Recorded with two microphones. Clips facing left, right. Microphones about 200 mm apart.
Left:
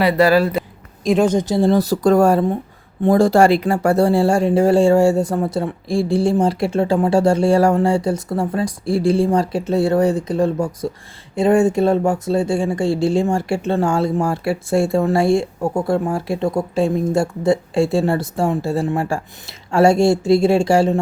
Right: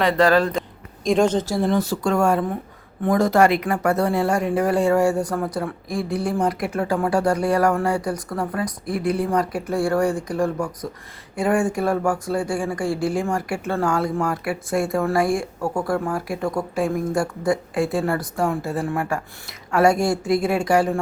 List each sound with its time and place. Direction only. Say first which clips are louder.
0.0 s speech: left 3 dB; 10° left (ahead or behind)
1.6 s speech: left 6 dB; 35° left (ahead or behind)